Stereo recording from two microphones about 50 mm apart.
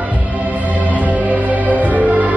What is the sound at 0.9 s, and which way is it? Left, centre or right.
Music, right.